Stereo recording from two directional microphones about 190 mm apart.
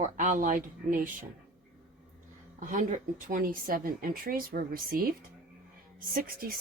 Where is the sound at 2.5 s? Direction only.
40° right (ahead or behind).